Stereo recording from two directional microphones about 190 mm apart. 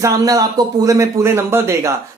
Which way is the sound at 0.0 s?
20° right (ahead or behind).